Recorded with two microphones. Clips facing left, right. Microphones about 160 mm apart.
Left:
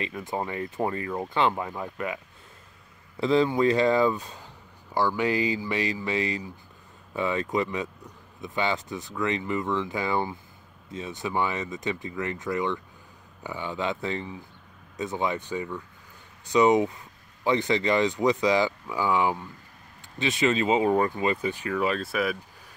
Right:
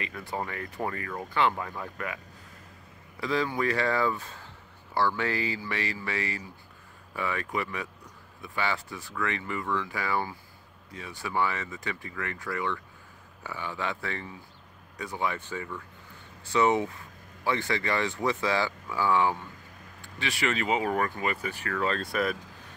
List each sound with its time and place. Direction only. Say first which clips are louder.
0.0 s speech: left 4 dB; 20° left (ahead or behind)
3.2 s speech: left 7 dB; 25° left (ahead or behind); by 22.4 s 5° left (ahead or behind)